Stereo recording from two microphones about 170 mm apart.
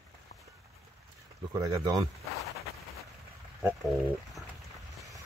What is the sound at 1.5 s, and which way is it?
Speech, 20° right (ahead or behind).